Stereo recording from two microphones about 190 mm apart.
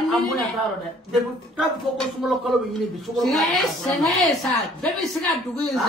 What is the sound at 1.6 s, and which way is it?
Speech, centre (ahead or behind).